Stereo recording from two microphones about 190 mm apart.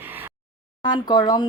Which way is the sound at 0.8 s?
20° left (ahead or behind).